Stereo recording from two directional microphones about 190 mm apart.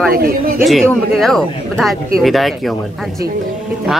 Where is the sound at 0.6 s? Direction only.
Centre (ahead or behind).